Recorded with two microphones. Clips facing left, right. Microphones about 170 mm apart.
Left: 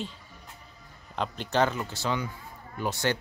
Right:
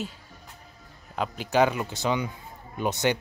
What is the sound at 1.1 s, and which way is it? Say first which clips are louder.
Speech: right 3 dB; 5° right (ahead or behind).